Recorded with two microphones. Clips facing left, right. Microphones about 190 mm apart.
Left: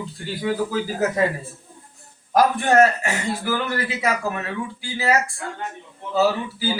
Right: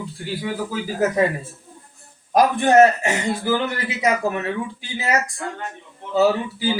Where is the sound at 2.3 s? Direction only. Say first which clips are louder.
Right 2 dB; 20° right (ahead or behind).